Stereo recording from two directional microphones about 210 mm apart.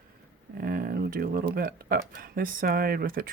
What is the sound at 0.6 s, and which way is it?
Speech, 45° right (ahead or behind).